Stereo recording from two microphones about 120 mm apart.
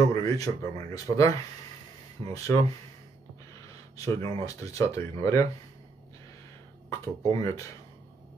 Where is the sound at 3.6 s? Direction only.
30° left (ahead or behind).